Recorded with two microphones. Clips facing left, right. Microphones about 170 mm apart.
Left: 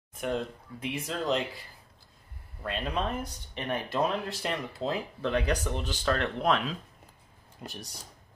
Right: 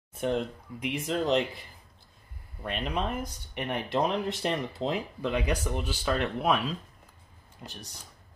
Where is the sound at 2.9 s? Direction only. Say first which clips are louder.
Right 1 dB; 15° right (ahead or behind).